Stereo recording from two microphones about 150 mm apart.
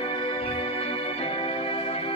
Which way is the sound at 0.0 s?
35° left (ahead or behind).